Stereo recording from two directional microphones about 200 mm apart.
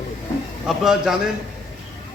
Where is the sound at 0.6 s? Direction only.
Centre (ahead or behind).